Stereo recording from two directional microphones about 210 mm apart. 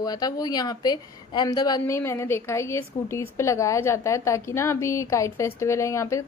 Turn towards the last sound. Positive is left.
turn(degrees=15)  # may be behind; listen again after turning